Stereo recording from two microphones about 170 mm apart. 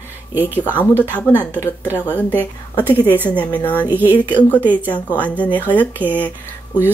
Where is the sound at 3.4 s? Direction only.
10° left (ahead or behind).